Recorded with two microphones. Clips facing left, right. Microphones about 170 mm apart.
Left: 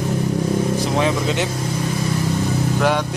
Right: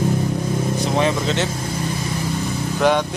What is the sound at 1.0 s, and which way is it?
Speech, 10° left (ahead or behind).